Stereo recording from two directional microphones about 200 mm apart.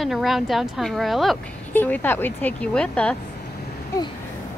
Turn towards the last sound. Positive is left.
turn(degrees=15)  # may be behind; listen again after turning